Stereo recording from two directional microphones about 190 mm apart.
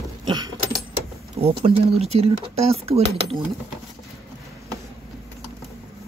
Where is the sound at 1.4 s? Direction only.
30° right (ahead or behind).